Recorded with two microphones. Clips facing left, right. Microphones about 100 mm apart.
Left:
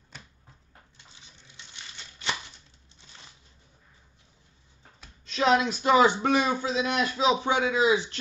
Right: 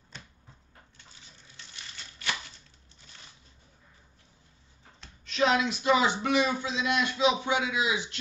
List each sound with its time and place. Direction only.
5.3 s speech: 35° left (ahead or behind)